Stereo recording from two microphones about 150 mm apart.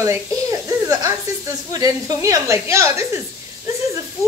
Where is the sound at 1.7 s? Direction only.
25° right (ahead or behind).